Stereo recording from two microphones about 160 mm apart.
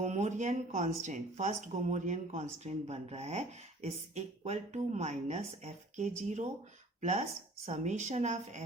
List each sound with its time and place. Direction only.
0.0 s speech: 45° right (ahead or behind)